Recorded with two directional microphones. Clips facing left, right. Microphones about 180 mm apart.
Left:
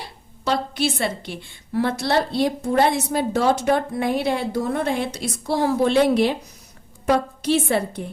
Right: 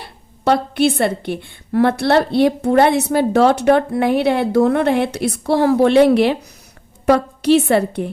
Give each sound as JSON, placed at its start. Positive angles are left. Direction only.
{"t": 0.0, "sound": "a woman's voice", "side_deg": -55}